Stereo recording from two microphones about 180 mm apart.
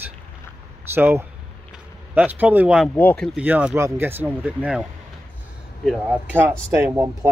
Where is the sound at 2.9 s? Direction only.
10° left (ahead or behind).